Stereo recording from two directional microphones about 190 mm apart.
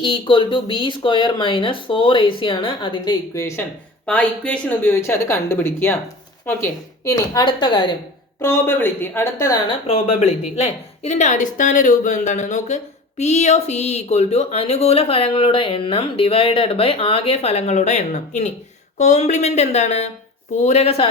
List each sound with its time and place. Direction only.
0.0 s speech: 25° left (ahead or behind)
4.0 s speech: 5° left (ahead or behind)
9.8 s a woman's voice: 35° left (ahead or behind)